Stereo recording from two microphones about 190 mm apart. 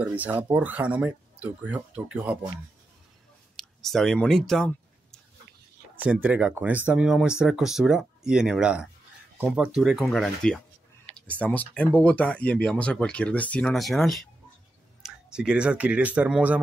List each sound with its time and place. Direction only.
0.0 s speech: 10° right (ahead or behind)
3.5 s a sound: centre (ahead or behind)
6.2 s speech: 5° right (ahead or behind)